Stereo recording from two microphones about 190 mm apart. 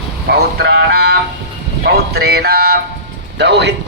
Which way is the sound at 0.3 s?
60° right (ahead or behind).